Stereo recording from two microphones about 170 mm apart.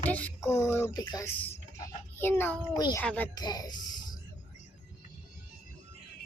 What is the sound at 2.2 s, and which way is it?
Speech, 15° left (ahead or behind).